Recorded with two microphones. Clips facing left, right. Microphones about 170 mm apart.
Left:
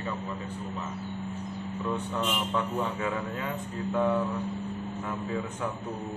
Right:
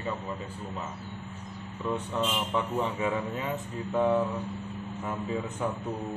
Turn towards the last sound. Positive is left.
turn(degrees=-15)  # may be behind; listen again after turning